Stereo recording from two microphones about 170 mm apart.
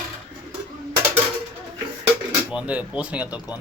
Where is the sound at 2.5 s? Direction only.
5° right (ahead or behind).